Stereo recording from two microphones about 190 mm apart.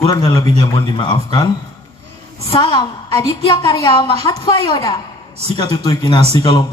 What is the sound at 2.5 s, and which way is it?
A woman's voice, 20° left (ahead or behind).